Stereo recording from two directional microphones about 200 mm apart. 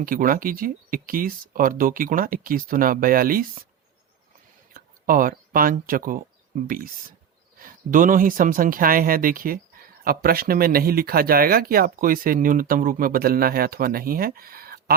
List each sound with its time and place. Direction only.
0.0 s speech: 45° right (ahead or behind)
4.7 s speech: 45° right (ahead or behind)
7.6 s speech: 40° right (ahead or behind)